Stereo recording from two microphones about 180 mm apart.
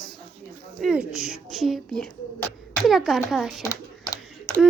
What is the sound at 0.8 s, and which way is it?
A woman's voice, 5° right (ahead or behind).